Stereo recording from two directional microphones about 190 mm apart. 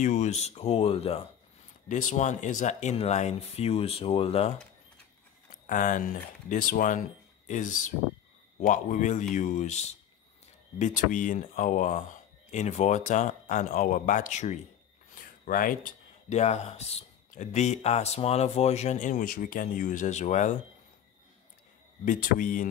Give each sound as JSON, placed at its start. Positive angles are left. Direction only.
{"t": 0.0, "sound": "speech", "side_deg": 40}
{"t": 5.5, "sound": "speech", "side_deg": 45}
{"t": 22.0, "sound": "speech", "side_deg": 45}